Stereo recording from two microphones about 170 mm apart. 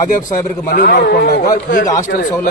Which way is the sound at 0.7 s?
55° left (ahead or behind).